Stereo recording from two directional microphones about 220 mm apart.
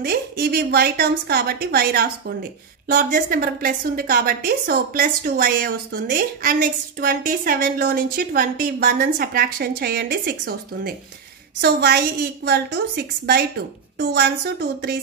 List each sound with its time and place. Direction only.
0.0 s a woman's voice: 45° right (ahead or behind)
12.4 s a woman's voice: 45° right (ahead or behind)